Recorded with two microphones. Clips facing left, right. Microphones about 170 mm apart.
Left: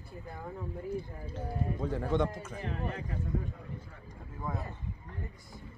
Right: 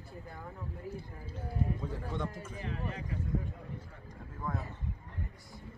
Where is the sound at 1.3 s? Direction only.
85° left.